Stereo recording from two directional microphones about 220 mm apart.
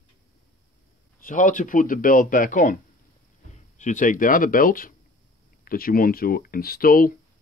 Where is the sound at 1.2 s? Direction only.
35° left (ahead or behind).